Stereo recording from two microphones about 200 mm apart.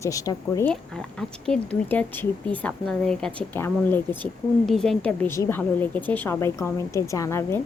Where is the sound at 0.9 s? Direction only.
5° left (ahead or behind).